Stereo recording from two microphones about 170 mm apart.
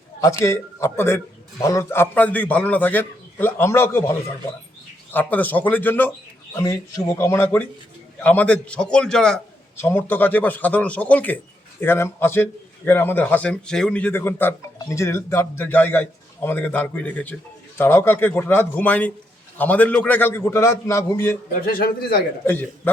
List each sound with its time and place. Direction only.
0.2 s a man's voice: 20° left (ahead or behind)
5.1 s a man's voice: 10° left (ahead or behind)
21.7 s a man's voice: 55° left (ahead or behind)
22.4 s a man's voice: 10° left (ahead or behind)